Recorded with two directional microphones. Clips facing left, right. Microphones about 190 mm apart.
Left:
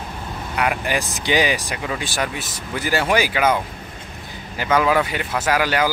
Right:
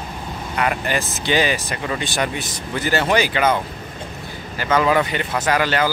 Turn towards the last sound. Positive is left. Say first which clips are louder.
# even
turn(degrees=10)  # may be behind; listen again after turning